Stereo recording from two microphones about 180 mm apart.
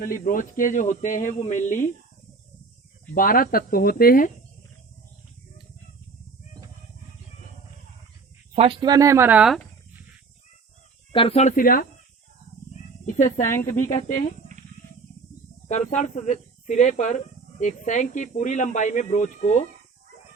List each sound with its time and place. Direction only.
0.0 s speech: 50° left (ahead or behind)
3.2 s speech: 50° left (ahead or behind)
8.5 s speech: 25° right (ahead or behind); by 9.6 s 5° right (ahead or behind)
11.1 s speech: 30° left (ahead or behind)
11.5 s speech: 50° left (ahead or behind)
13.1 s speech: 45° left (ahead or behind)
15.6 s speech: 40° left (ahead or behind)